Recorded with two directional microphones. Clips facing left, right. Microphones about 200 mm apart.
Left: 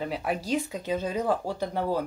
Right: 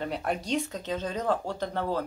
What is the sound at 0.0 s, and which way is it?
Speech, 5° left (ahead or behind).